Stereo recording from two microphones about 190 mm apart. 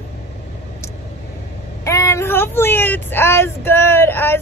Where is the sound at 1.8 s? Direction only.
15° left (ahead or behind).